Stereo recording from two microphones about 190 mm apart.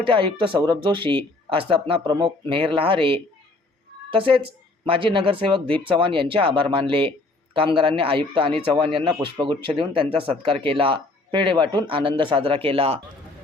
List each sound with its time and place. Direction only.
0.0 s speech: 25° right (ahead or behind)